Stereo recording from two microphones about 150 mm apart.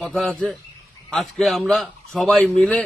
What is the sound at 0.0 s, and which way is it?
A man's voice, 5° left (ahead or behind).